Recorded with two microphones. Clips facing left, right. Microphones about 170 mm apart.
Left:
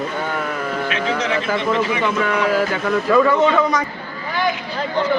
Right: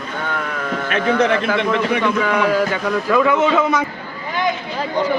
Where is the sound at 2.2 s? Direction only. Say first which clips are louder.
Right 1 dB; centre (ahead or behind).